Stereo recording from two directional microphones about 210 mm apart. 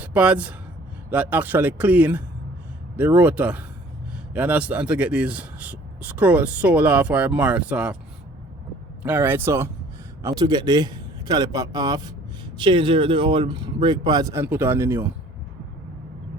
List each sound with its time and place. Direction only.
0.0 s speech: 5° right (ahead or behind)
9.0 s speech: 10° right (ahead or behind)